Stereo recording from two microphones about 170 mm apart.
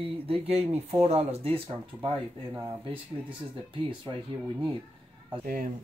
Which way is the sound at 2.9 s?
30° right (ahead or behind).